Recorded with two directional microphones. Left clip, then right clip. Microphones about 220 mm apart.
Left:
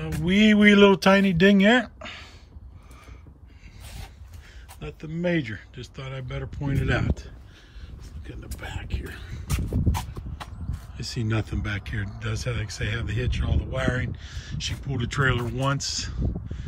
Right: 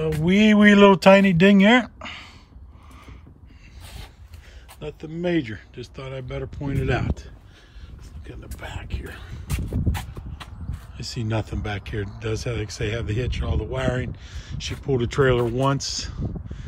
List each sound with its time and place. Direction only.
0.2 s speech: 15° right (ahead or behind)
4.7 s speech: 5° right (ahead or behind)
8.5 s speech: 10° right (ahead or behind)